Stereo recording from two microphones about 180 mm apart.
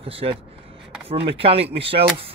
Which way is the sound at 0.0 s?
30° right (ahead or behind).